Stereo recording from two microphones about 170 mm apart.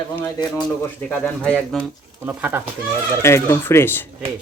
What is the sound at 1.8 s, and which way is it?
Speech, 10° right (ahead or behind).